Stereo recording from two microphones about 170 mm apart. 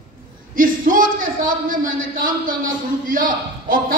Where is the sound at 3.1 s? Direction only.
55° right (ahead or behind).